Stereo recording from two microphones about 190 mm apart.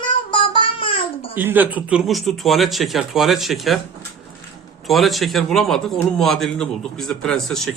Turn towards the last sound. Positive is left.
turn(degrees=5)  # may be behind; listen again after turning